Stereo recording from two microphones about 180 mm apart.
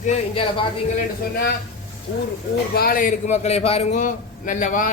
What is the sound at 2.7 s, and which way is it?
A man's voice, 55° left (ahead or behind).